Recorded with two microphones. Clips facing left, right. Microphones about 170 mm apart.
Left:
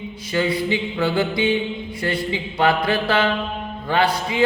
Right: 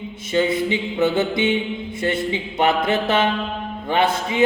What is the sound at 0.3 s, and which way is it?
A man's voice, 25° right (ahead or behind).